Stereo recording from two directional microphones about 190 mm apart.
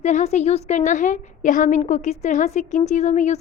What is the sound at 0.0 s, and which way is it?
A woman's voice, 40° left (ahead or behind).